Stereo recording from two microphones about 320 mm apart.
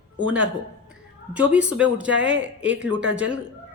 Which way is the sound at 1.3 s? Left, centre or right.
Centre.